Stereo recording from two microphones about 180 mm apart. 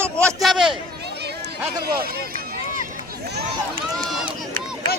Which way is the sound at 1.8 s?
55° right (ahead or behind).